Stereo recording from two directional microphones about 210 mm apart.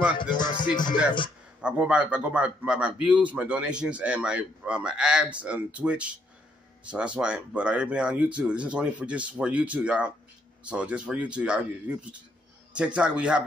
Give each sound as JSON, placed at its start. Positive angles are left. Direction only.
{"t": 0.4, "sound": "music", "side_deg": 20}
{"t": 1.6, "sound": "a man's voice", "side_deg": -5}